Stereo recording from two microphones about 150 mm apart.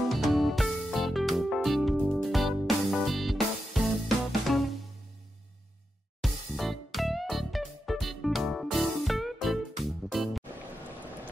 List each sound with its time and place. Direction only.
0.1 s music: centre (ahead or behind)
6.2 s music: centre (ahead or behind)